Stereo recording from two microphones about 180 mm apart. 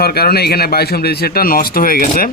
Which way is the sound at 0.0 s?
60° left (ahead or behind).